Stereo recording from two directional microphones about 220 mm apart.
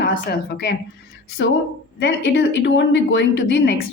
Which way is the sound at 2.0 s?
55° left (ahead or behind).